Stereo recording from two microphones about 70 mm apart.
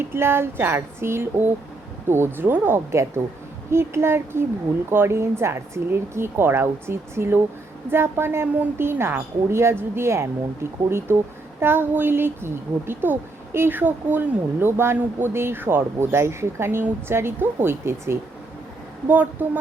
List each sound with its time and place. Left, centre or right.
0.0 s a woman's voice: right
19.0 s speech: right